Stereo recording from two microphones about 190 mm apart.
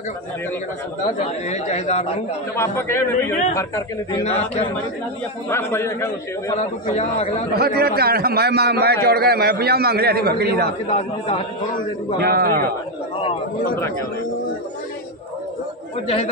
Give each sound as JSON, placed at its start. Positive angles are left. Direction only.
{"t": 1.2, "sound": "a man's voice", "side_deg": 35}
{"t": 2.5, "sound": "speech", "side_deg": 15}
{"t": 4.2, "sound": "a man's voice", "side_deg": 35}
{"t": 5.5, "sound": "speech", "side_deg": 15}
{"t": 6.5, "sound": "a man's voice", "side_deg": 35}
{"t": 7.5, "sound": "a man's voice", "side_deg": -55}
{"t": 10.9, "sound": "a man's voice", "side_deg": 30}
{"t": 12.2, "sound": "a man's voice", "side_deg": -55}